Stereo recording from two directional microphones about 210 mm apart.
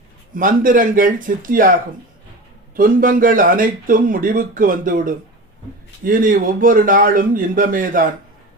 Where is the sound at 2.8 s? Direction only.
40° right (ahead or behind).